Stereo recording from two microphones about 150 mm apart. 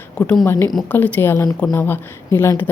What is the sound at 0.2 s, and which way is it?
A woman's voice, 10° left (ahead or behind).